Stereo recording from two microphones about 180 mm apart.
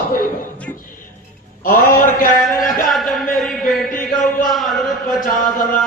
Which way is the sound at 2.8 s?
Centre (ahead or behind).